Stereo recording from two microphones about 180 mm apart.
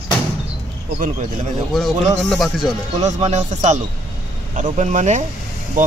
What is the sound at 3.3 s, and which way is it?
Speech, 40° right (ahead or behind).